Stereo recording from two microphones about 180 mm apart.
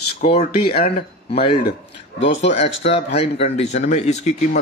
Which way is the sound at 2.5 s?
35° left (ahead or behind).